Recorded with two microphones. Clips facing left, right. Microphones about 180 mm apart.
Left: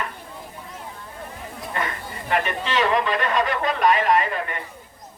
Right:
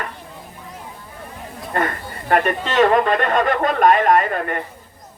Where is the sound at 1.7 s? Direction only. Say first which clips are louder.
Right 7 dB; 50° right (ahead or behind).